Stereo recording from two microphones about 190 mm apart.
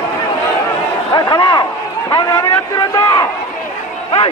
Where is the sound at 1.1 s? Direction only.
20° left (ahead or behind).